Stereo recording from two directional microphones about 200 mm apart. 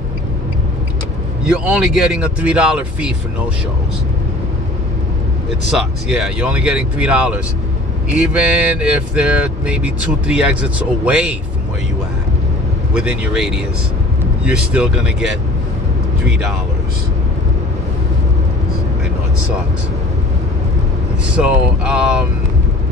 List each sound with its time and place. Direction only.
1.5 s speech: 5° right (ahead or behind)
5.8 s speech: centre (ahead or behind)
12.9 s speech: 5° right (ahead or behind)
21.4 s speech: 5° right (ahead or behind)